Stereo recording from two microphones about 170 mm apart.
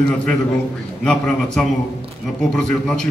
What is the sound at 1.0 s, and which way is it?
A man's voice, 5° left (ahead or behind).